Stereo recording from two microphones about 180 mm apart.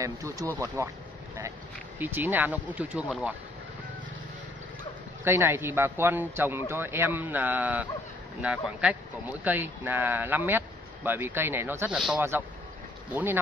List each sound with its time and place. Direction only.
0.0 s speech: 15° right (ahead or behind)
2.0 s speech: 10° right (ahead or behind)
5.2 s speech: 15° right (ahead or behind)